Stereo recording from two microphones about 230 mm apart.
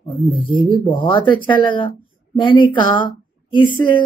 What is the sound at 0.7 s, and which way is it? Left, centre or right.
Speech, left.